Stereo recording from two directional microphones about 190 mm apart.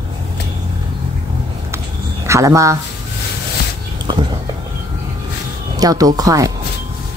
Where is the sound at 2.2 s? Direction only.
15° right (ahead or behind).